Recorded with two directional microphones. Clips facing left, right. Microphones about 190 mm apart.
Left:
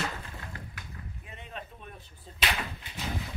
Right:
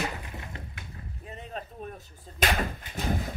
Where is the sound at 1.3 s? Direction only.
40° right (ahead or behind).